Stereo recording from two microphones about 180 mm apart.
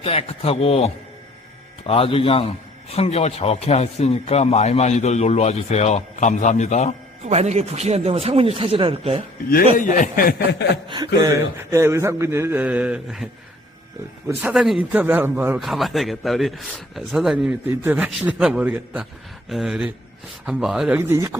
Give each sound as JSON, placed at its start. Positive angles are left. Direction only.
{"t": 0.0, "sound": "a man's voice", "side_deg": 30}
{"t": 1.9, "sound": "a man's voice", "side_deg": 30}
{"t": 7.3, "sound": "speech", "side_deg": -35}
{"t": 9.7, "sound": "a sound", "side_deg": 45}
{"t": 10.8, "sound": "a man's voice", "side_deg": -25}
{"t": 14.5, "sound": "a man's voice", "side_deg": 0}
{"t": 15.6, "sound": "a man's voice", "side_deg": 0}